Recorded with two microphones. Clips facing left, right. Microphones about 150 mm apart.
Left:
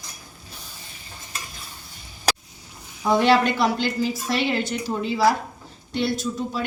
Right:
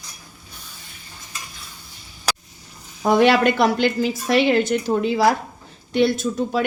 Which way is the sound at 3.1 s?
60° right (ahead or behind).